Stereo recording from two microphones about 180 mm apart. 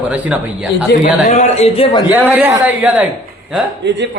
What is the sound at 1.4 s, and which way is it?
Speech, 35° left (ahead or behind).